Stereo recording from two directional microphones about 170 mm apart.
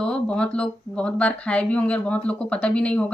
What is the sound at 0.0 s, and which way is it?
Speech, 5° left (ahead or behind).